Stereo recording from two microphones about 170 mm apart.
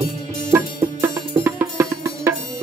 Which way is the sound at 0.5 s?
20° right (ahead or behind).